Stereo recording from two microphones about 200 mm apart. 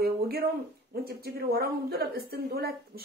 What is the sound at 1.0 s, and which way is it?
A woman's voice, 50° right (ahead or behind).